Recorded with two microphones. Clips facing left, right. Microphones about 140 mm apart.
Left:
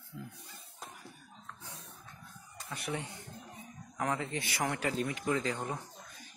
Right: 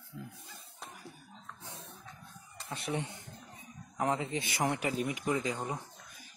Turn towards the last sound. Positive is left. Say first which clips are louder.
# even
turn(degrees=-10)  # may be behind; listen again after turning